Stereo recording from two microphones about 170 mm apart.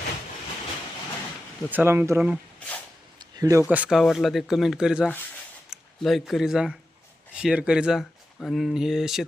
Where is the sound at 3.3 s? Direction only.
20° right (ahead or behind).